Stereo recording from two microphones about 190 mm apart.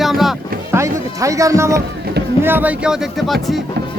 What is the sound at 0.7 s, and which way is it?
Speech, 15° right (ahead or behind).